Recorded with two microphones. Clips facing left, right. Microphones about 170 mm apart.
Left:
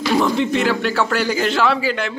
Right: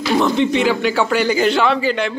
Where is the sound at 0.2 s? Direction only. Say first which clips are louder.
Right 2 dB; centre (ahead or behind).